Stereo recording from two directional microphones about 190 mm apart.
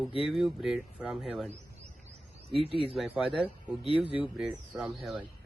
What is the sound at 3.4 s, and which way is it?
Speech, 30° right (ahead or behind).